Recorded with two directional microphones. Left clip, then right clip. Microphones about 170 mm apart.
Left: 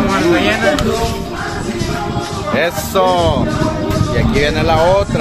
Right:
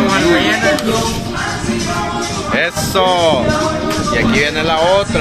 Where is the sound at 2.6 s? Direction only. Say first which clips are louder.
Left 1 dB; 5° left (ahead or behind).